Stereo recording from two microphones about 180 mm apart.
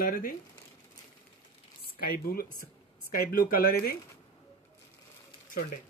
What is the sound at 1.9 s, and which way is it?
Speech, 55° left (ahead or behind).